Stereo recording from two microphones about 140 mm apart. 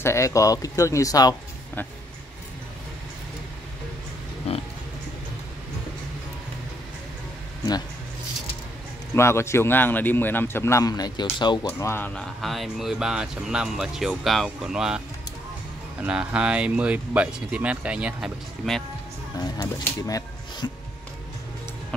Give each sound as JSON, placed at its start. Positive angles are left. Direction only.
{"t": 0.0, "sound": "speech", "side_deg": 20}
{"t": 9.1, "sound": "a man's voice", "side_deg": 20}
{"t": 11.6, "sound": "a man's voice", "side_deg": 15}
{"t": 12.1, "sound": "speech", "side_deg": 0}
{"t": 16.0, "sound": "speech", "side_deg": -10}
{"t": 19.3, "sound": "music", "side_deg": 30}
{"t": 19.6, "sound": "speech", "side_deg": 20}